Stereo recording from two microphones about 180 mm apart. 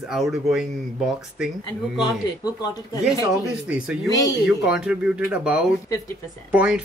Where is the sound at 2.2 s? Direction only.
20° left (ahead or behind).